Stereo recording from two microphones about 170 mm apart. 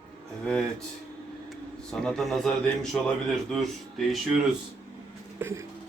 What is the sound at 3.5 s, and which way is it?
Speech, centre (ahead or behind).